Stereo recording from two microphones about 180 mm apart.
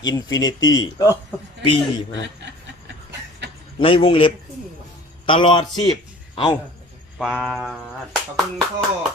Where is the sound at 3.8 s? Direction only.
30° left (ahead or behind).